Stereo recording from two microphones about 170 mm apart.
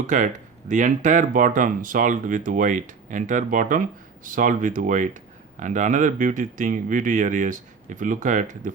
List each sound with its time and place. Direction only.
0.1 s speech: 45° right (ahead or behind)